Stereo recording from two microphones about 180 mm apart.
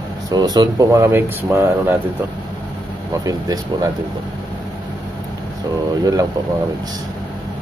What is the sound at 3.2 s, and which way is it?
Speech, 20° right (ahead or behind).